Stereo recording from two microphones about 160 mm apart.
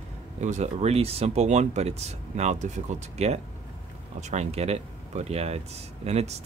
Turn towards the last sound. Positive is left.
turn(degrees=-40)  # may be behind; listen again after turning